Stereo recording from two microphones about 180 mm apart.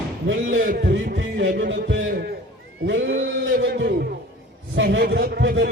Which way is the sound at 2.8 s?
90° right.